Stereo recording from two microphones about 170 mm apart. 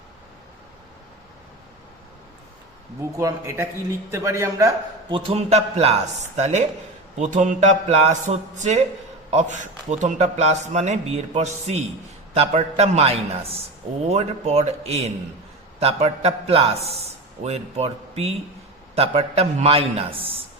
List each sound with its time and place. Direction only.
3.0 s a man's voice: 20° right (ahead or behind)
5.1 s a man's voice: 35° right (ahead or behind)